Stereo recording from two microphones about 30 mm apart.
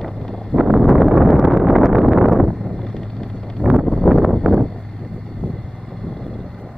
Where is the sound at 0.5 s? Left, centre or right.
Left.